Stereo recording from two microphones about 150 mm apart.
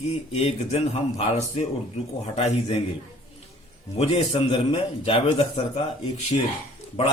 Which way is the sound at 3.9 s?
40° left (ahead or behind).